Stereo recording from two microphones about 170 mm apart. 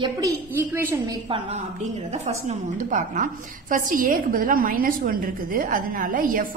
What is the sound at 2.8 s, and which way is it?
A woman's voice, 45° right (ahead or behind).